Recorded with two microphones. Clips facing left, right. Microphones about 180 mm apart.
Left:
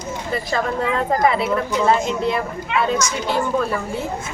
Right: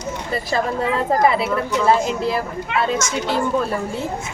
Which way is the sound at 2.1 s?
5° right (ahead or behind).